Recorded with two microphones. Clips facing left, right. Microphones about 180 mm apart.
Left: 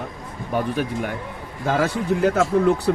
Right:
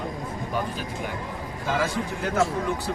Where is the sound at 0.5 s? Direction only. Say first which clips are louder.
Left 9 dB; 60° left (ahead or behind).